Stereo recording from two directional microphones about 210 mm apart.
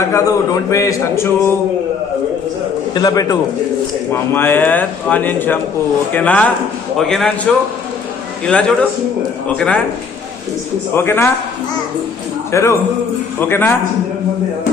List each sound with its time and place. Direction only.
0.1 s a man's voice: 15° left (ahead or behind)
2.9 s a man's voice: 15° left (ahead or behind)
10.9 s a man's voice: 10° left (ahead or behind)
12.5 s a man's voice: 15° left (ahead or behind)